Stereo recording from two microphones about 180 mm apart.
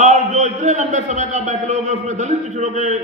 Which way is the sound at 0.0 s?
40° right (ahead or behind).